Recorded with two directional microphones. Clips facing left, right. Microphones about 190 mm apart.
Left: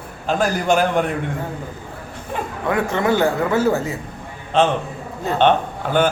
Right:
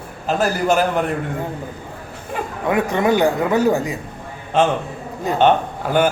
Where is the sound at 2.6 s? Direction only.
20° right (ahead or behind).